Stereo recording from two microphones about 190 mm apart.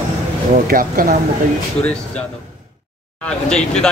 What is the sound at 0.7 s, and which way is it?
Speech, 50° right (ahead or behind).